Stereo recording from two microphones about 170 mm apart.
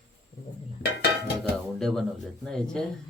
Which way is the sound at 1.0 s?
90° left.